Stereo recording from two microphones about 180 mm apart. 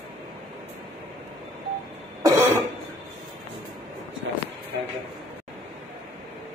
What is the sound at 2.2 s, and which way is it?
Cough, 15° right (ahead or behind).